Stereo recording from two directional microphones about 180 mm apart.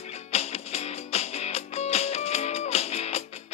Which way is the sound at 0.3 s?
35° left (ahead or behind).